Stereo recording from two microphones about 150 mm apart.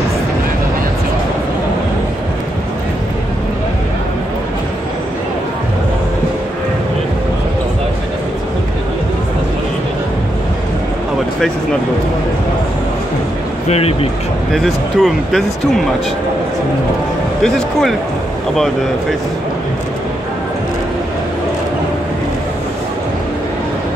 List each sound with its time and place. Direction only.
13.7 s speech: 45° left (ahead or behind)
14.5 s speech: centre (ahead or behind)
17.4 s speech: centre (ahead or behind)